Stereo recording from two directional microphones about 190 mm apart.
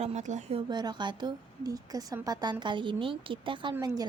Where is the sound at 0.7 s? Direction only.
20° right (ahead or behind).